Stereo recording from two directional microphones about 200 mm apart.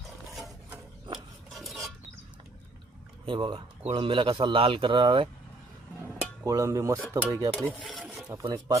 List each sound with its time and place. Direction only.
0.3 s ratchet: centre (ahead or behind)
1.5 s pulleys: centre (ahead or behind)
3.2 s speech: 25° right (ahead or behind)
6.4 s speech: 15° right (ahead or behind)
7.5 s filing: 5° left (ahead or behind)
8.3 s speech: 15° right (ahead or behind)